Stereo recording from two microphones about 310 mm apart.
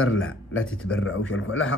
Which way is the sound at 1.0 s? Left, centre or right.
Left.